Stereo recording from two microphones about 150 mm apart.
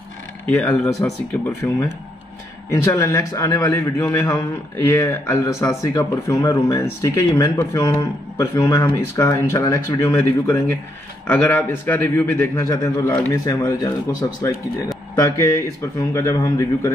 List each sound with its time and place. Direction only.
0.5 s a man's voice: 5° left (ahead or behind); by 13.9 s 20° left (ahead or behind)
15.1 s speech: 20° left (ahead or behind)